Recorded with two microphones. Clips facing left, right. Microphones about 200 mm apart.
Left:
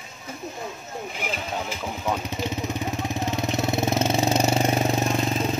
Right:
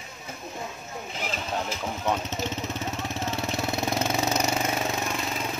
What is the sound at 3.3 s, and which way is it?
Engine, 20° left (ahead or behind).